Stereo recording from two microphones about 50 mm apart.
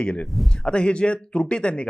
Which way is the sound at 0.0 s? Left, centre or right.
Centre.